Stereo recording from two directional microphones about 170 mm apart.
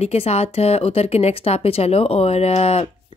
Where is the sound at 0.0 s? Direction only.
40° left (ahead or behind).